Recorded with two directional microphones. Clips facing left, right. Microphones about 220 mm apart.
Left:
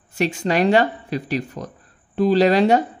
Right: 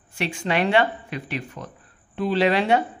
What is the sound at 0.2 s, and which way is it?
Speech, 40° left (ahead or behind).